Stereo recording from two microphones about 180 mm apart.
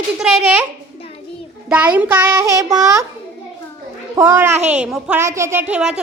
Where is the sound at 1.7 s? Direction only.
10° right (ahead or behind).